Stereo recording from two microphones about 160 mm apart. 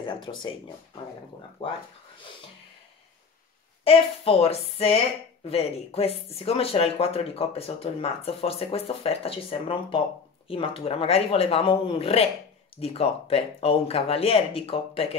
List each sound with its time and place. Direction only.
0.0 s speech: 30° left (ahead or behind)
1.6 s speech: 35° left (ahead or behind)
3.8 s speech: 35° left (ahead or behind)